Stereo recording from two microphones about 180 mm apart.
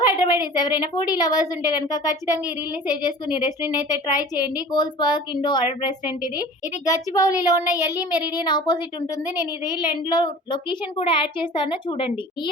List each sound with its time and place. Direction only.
0.0 s a woman's voice: 20° left (ahead or behind)